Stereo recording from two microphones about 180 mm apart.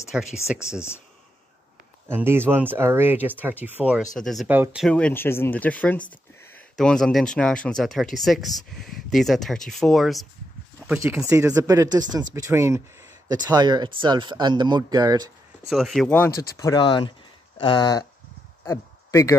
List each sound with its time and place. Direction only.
0.1 s speech: 5° right (ahead or behind)
0.6 s speech: 15° left (ahead or behind)
2.0 s speech: 10° right (ahead or behind)
4.5 s speech: 10° right (ahead or behind)
4.8 s speech: 5° left (ahead or behind); by 15.3 s 20° right (ahead or behind)
15.7 s speech: centre (ahead or behind)
16.5 s speech: 20° left (ahead or behind)